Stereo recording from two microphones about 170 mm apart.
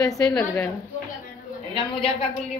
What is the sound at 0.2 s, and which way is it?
Speech, 5° left (ahead or behind).